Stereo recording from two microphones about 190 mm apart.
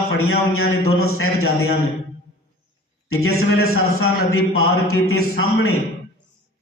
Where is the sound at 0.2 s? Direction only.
90° left.